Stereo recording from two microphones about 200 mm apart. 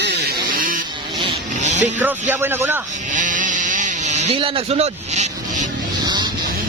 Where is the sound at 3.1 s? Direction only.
40° right (ahead or behind).